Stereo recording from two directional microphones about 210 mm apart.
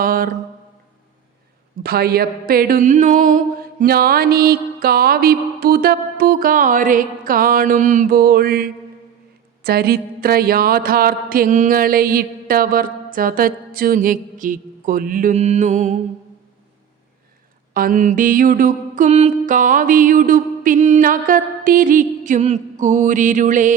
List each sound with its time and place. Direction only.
0.0 s mantra: 40° right (ahead or behind)
1.8 s a sound: 45° right (ahead or behind)
17.7 s mantra: 40° right (ahead or behind)